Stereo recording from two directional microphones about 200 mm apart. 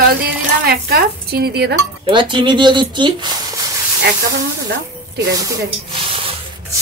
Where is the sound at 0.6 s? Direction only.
50° right (ahead or behind).